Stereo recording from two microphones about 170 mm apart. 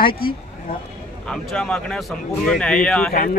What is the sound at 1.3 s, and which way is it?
Speech, 5° left (ahead or behind).